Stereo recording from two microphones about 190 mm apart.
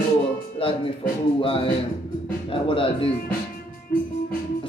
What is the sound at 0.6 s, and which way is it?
Music, 30° left (ahead or behind).